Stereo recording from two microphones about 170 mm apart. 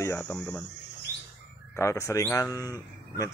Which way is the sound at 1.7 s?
15° left (ahead or behind).